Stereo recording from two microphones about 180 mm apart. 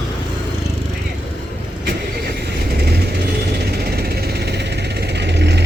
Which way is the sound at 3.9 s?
60° right (ahead or behind).